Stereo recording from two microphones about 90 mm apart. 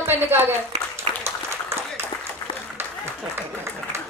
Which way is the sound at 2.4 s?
25° left (ahead or behind).